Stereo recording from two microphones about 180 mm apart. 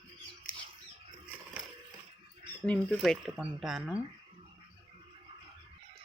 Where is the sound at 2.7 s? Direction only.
5° left (ahead or behind).